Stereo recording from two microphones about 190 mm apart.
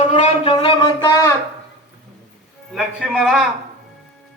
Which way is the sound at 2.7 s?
Centre (ahead or behind).